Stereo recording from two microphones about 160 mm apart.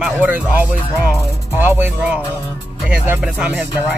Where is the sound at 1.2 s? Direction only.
20° left (ahead or behind).